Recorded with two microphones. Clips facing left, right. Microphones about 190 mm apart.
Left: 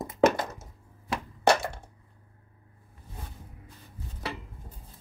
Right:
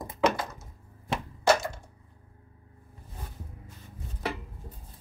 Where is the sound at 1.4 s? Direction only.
65° left (ahead or behind).